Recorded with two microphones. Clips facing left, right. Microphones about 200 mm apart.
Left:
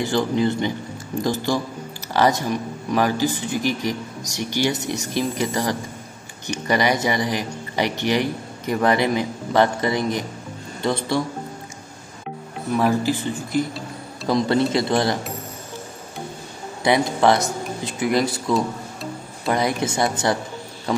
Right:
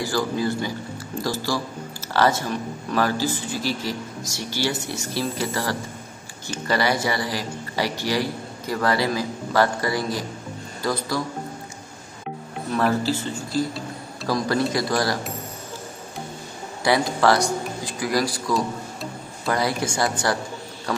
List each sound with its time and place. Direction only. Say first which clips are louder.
0.0 s a man's voice: left 4 dB; 20° left (ahead or behind)
12.7 s a man's voice: left 2 dB; 15° left (ahead or behind)
16.8 s speech: left 2 dB; 20° left (ahead or behind)
19.4 s a man's voice: left 2 dB; 20° left (ahead or behind)